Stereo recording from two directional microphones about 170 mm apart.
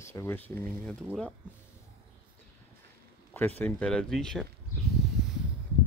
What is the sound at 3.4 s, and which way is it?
Speech, 10° left (ahead or behind).